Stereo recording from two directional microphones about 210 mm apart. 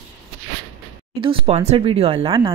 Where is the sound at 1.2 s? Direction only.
25° right (ahead or behind).